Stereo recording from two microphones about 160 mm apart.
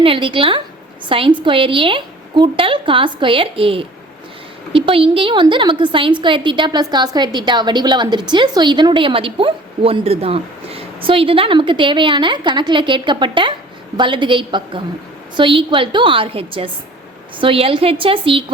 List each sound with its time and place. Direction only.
0.0 s a woman's voice: 35° right (ahead or behind)